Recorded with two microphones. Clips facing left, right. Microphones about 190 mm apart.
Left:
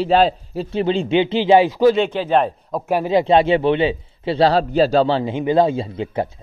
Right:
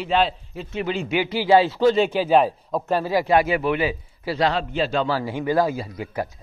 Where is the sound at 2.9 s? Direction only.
20° left (ahead or behind).